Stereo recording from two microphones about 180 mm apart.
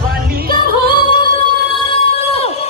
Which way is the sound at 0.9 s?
25° left (ahead or behind).